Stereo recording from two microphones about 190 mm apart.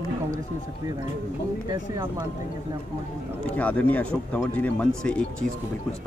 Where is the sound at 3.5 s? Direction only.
10° left (ahead or behind).